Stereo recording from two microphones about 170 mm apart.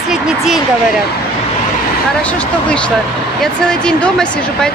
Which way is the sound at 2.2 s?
5° left (ahead or behind).